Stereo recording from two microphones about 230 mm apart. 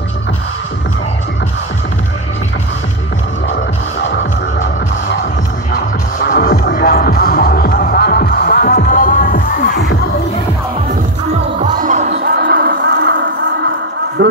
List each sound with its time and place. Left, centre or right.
4.0 s music: left
5.7 s music: left
11.8 s music: right